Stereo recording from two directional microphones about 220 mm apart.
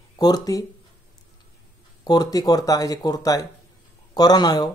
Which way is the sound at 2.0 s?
15° left (ahead or behind).